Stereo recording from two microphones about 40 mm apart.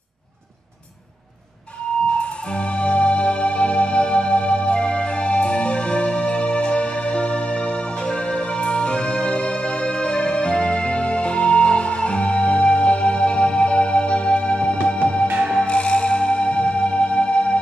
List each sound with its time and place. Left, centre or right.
2.0 s music: left